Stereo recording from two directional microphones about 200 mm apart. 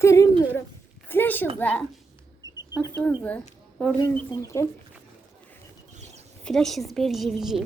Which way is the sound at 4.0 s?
15° left (ahead or behind).